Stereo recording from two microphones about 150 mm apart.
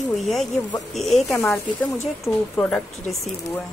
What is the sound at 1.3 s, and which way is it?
Speech, 10° left (ahead or behind).